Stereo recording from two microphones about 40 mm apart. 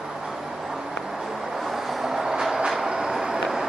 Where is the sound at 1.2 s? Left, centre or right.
Centre.